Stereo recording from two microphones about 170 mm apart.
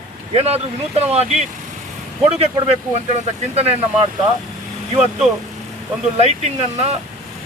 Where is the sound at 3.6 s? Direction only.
35° right (ahead or behind).